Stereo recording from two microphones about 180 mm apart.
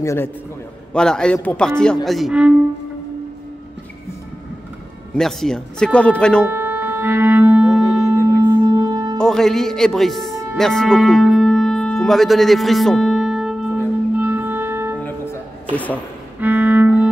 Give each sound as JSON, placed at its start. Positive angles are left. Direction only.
{"t": 0.0, "sound": "a man's voice", "side_deg": 15}
{"t": 0.9, "sound": "speech", "side_deg": 5}
{"t": 5.1, "sound": "speech", "side_deg": 0}
{"t": 6.4, "sound": "music", "side_deg": -10}
{"t": 8.5, "sound": "wind instrument", "side_deg": -20}
{"t": 9.2, "sound": "speech", "side_deg": 5}
{"t": 10.6, "sound": "music", "side_deg": 0}
{"t": 15.7, "sound": "a man's voice", "side_deg": 10}
{"t": 16.3, "sound": "music", "side_deg": -10}